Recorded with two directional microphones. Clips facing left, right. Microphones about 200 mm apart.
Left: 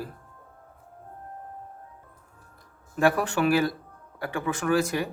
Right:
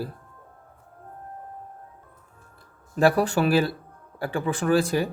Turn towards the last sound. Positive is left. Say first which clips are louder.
# right 3 dB
turn(degrees=-30)  # may be behind; listen again after turning